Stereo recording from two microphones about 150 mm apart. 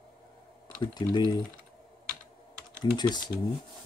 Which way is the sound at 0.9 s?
30° left (ahead or behind).